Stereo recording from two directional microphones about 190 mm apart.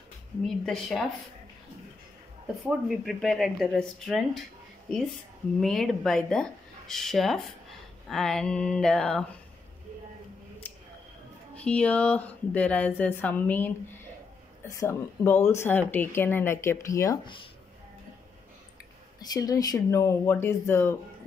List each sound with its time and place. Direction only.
0.7 s speech: centre (ahead or behind)
2.6 s speech: centre (ahead or behind)
5.6 s speech: centre (ahead or behind)
10.6 s a sound: 10° left (ahead or behind)
11.5 s speech: 5° left (ahead or behind)
19.1 s speech: 20° left (ahead or behind)